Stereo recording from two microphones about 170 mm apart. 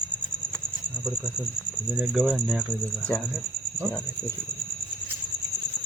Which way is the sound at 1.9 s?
5° right (ahead or behind).